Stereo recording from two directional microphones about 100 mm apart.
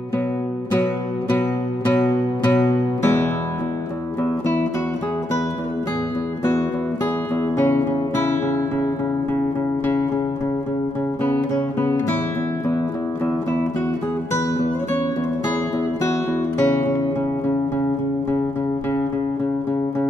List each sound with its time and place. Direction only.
2.6 s music: 20° left (ahead or behind)
7.5 s music: 25° left (ahead or behind)
11.2 s music: 20° left (ahead or behind)
16.6 s music: 20° left (ahead or behind)